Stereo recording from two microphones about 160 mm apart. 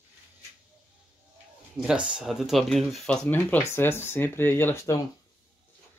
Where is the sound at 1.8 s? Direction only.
5° right (ahead or behind); by 4.9 s 15° left (ahead or behind).